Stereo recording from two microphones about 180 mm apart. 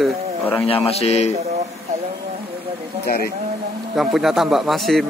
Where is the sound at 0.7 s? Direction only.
35° left (ahead or behind).